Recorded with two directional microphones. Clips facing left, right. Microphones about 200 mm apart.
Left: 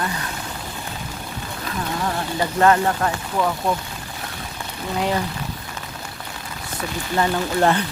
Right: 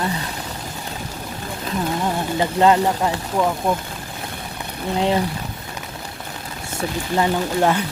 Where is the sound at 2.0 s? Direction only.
20° right (ahead or behind).